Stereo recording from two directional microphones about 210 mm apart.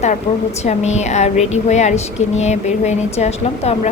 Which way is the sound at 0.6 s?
30° left (ahead or behind).